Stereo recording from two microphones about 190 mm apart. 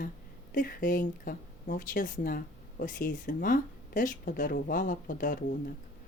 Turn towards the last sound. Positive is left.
turn(degrees=45)  # may be behind; listen again after turning